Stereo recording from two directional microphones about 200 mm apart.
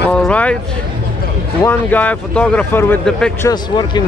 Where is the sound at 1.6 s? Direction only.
10° left (ahead or behind).